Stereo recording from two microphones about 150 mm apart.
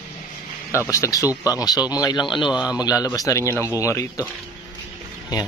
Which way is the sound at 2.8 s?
25° left (ahead or behind).